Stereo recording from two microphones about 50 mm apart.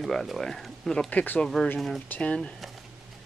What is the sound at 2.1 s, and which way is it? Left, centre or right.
Speech, left.